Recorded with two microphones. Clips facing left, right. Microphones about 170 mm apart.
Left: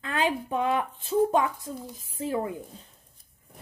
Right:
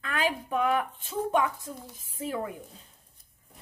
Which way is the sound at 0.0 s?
25° left (ahead or behind).